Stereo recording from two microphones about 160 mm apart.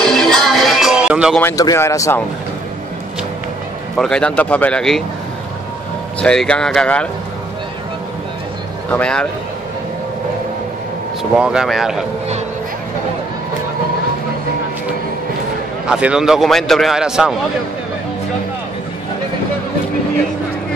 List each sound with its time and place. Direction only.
0.0 s music: 5° left (ahead or behind)
1.4 s speech: 20° left (ahead or behind)
3.9 s a man's voice: 5° left (ahead or behind)
6.2 s a man's voice: 5° left (ahead or behind)
8.9 s a man's voice: 5° left (ahead or behind)
11.3 s a man's voice: 5° right (ahead or behind)
15.9 s a man's voice: 5° right (ahead or behind)